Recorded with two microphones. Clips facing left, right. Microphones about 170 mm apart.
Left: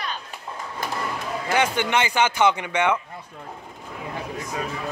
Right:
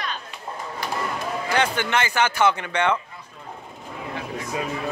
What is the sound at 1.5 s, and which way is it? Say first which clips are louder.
Speech: left 1 dB; 15° left (ahead or behind).